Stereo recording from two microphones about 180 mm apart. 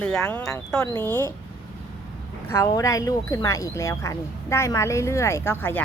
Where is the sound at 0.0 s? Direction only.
5° left (ahead or behind).